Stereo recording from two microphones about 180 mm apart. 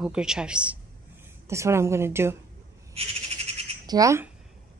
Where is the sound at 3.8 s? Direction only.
20° right (ahead or behind).